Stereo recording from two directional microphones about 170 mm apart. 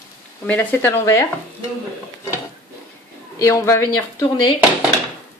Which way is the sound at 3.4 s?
15° left (ahead or behind).